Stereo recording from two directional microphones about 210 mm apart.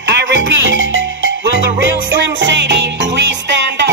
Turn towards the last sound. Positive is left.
turn(degrees=-55)  # may be behind; listen again after turning